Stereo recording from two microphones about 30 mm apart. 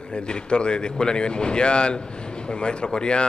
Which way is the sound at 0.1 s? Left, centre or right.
Left.